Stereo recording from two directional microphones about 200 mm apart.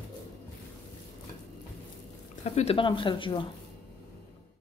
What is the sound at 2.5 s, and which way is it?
Speech, 30° left (ahead or behind).